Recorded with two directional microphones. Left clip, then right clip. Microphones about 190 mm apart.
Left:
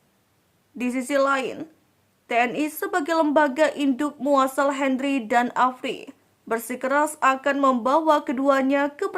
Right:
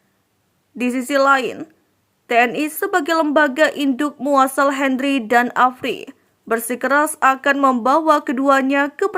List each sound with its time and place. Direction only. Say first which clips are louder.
0.8 s a woman's voice: right 5 dB; 20° right (ahead or behind)